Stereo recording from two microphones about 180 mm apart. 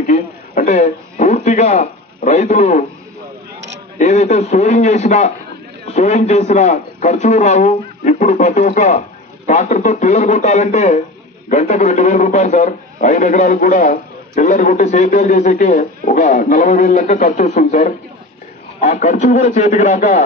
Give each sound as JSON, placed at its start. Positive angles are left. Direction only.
{"t": 0.0, "sound": "a man's voice", "side_deg": 45}
{"t": 4.0, "sound": "a man's voice", "side_deg": 40}